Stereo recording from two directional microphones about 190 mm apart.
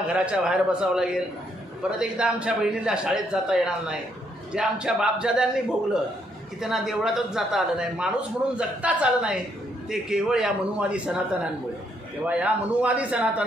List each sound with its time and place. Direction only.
0.1 s a man's voice: 5° right (ahead or behind)
12.3 s a man's voice: 5° right (ahead or behind)